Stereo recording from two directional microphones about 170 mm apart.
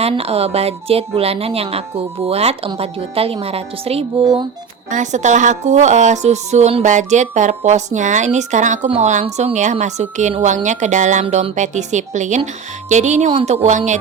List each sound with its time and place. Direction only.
0.0 s speech: 35° right (ahead or behind)
4.2 s speech: 25° right (ahead or behind)
4.9 s a woman's voice: 45° right (ahead or behind)